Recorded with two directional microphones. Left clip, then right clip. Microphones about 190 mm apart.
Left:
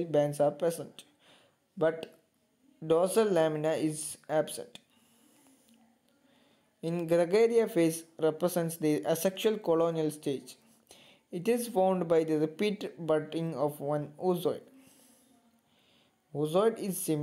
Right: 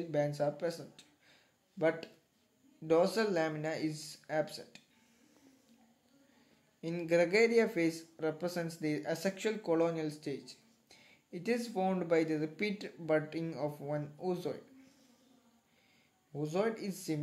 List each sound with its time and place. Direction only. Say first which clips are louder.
0.1 s speech: left 6 dB; 35° left (ahead or behind)
6.8 s speech: left 3 dB; 35° left (ahead or behind)
16.3 s speech: left 7 dB; 35° left (ahead or behind)